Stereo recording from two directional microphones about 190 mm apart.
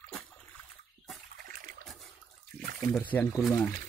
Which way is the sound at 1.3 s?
45° right (ahead or behind).